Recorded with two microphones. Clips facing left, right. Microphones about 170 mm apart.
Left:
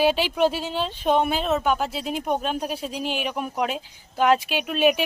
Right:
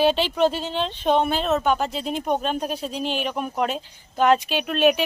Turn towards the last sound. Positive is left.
turn(degrees=10)  # may be behind; listen again after turning